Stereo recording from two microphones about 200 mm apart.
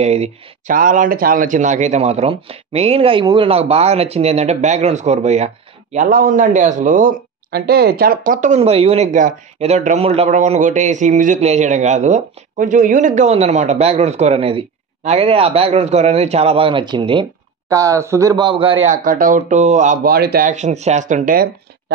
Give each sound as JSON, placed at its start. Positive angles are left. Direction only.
{"t": 0.0, "sound": "speech", "side_deg": -35}
{"t": 19.0, "sound": "speech", "side_deg": -45}